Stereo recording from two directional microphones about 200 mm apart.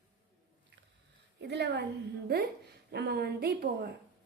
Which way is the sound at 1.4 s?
60° right (ahead or behind).